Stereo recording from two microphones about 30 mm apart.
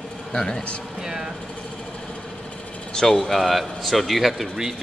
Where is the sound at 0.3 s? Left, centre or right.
Left.